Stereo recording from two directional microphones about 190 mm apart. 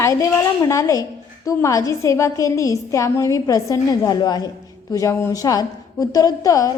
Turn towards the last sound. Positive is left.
turn(degrees=20)  # may be behind; listen again after turning